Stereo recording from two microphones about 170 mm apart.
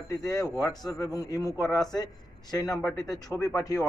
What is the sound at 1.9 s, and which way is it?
Speech, 25° left (ahead or behind).